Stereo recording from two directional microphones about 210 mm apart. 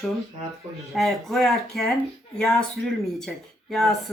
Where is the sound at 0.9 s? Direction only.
Centre (ahead or behind).